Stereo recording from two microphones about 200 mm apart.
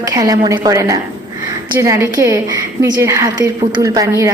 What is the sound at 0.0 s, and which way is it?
A woman's voice, 15° right (ahead or behind).